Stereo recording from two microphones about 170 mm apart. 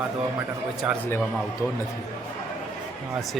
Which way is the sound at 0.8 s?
5° right (ahead or behind).